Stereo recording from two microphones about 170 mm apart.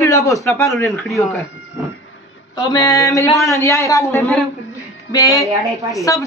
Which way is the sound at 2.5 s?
20° left (ahead or behind).